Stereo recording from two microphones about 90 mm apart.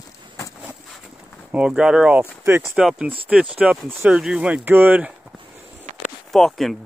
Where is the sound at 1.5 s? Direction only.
10° right (ahead or behind).